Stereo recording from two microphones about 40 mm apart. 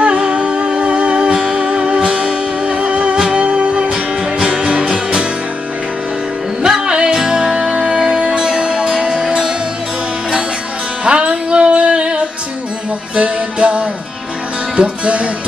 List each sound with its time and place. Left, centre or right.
0.0 s music: right
1.3 s music: centre
3.9 s music: centre
6.6 s music: centre
11.1 s music: right